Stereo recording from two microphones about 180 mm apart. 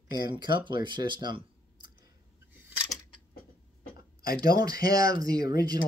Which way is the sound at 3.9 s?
55° left (ahead or behind).